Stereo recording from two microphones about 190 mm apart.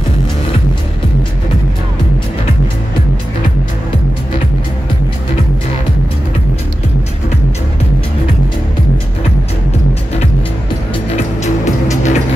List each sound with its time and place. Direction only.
11.9 s music: 40° left (ahead or behind)